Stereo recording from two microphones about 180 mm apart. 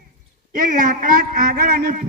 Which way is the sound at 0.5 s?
50° right (ahead or behind).